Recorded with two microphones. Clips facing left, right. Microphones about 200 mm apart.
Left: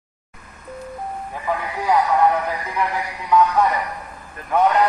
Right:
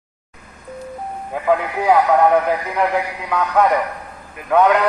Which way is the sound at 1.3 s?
65° right (ahead or behind).